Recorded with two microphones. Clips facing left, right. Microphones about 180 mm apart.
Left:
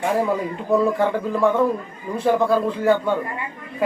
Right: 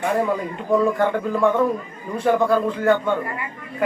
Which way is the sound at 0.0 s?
5° left (ahead or behind).